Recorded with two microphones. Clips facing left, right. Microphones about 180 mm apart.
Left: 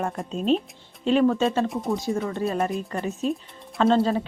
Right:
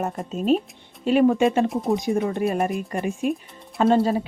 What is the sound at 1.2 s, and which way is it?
Speech, 15° right (ahead or behind).